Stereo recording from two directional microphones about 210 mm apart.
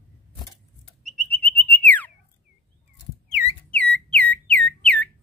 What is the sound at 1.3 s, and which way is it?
Whistle, 5° left (ahead or behind).